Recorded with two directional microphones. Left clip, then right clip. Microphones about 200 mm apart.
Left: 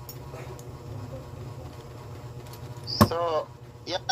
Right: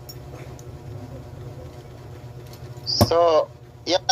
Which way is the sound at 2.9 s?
40° right (ahead or behind).